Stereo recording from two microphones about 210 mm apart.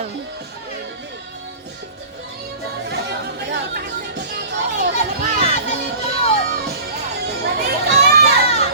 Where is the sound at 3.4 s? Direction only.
50° right (ahead or behind).